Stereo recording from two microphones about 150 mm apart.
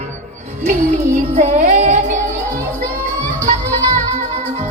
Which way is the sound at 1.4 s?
55° right (ahead or behind).